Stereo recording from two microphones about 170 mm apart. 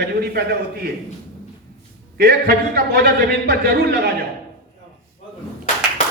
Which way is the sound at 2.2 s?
65° right (ahead or behind).